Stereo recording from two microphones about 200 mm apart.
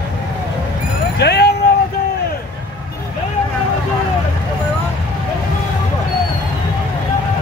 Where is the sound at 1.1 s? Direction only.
55° left (ahead or behind).